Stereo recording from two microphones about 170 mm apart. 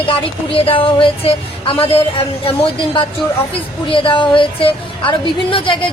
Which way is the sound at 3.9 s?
30° left (ahead or behind).